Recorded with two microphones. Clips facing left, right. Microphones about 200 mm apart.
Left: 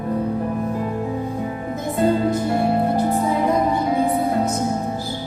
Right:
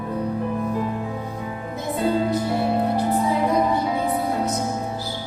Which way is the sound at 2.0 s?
50° left (ahead or behind).